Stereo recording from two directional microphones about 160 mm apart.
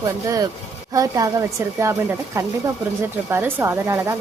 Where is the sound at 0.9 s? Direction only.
20° right (ahead or behind).